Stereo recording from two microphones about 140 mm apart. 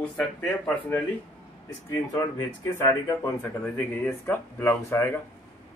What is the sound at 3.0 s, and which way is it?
Speech, 25° left (ahead or behind).